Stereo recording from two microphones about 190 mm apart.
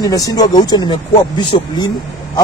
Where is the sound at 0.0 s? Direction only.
20° left (ahead or behind).